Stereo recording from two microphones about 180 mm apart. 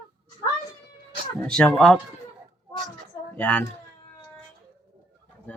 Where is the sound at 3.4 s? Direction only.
5° left (ahead or behind).